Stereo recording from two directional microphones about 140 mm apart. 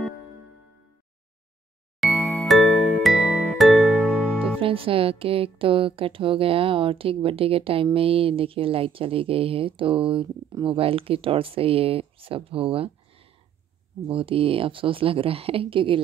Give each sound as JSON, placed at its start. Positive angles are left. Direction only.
{"t": 2.0, "sound": "jingle", "side_deg": 0}
{"t": 2.4, "sound": "music", "side_deg": 0}
{"t": 4.6, "sound": "speech", "side_deg": -40}